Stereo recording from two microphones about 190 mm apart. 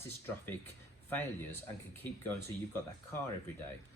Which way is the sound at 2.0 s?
10° left (ahead or behind).